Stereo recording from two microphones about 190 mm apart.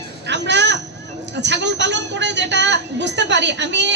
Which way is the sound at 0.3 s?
65° right (ahead or behind).